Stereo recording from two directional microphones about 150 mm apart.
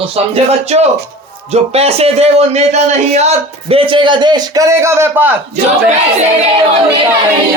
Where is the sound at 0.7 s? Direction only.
45° right (ahead or behind); by 5.3 s 15° right (ahead or behind).